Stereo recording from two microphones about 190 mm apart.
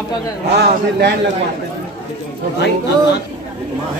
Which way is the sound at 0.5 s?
60° right (ahead or behind).